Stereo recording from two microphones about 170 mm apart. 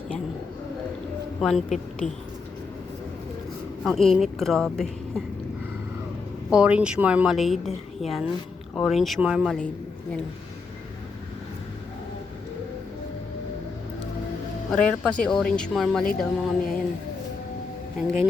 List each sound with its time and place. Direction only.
1.4 s speech: centre (ahead or behind)
1.7 s a woman's voice: 45° left (ahead or behind)
3.8 s a woman's voice: centre (ahead or behind)
6.5 s a woman's voice: 5° right (ahead or behind)
14.7 s a woman's voice: 5° left (ahead or behind)